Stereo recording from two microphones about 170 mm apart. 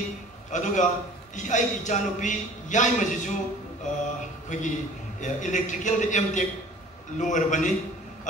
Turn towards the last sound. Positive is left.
turn(degrees=45)  # may be behind; listen again after turning